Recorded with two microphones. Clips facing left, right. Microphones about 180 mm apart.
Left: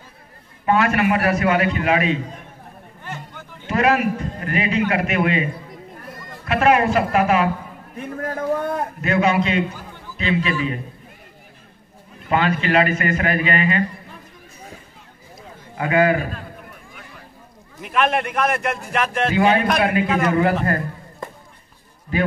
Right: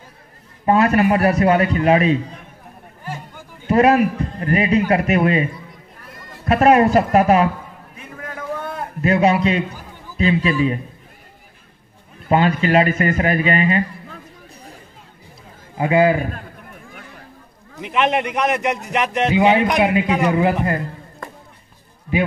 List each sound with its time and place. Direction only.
0.7 s a man's voice: 35° right (ahead or behind)
3.0 s a sound: 5° right (ahead or behind)
3.6 s a man's voice: 35° right (ahead or behind)
6.4 s a man's voice: 40° right (ahead or behind)
8.0 s a sound: 45° left (ahead or behind)
9.0 s a man's voice: 35° right (ahead or behind)
10.1 s a sound: 35° right (ahead or behind)
12.3 s a man's voice: 35° right (ahead or behind)
15.8 s a man's voice: 25° right (ahead or behind)
17.8 s a man's voice: 20° right (ahead or behind)